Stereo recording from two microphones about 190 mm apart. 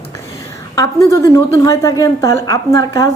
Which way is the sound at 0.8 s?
15° left (ahead or behind).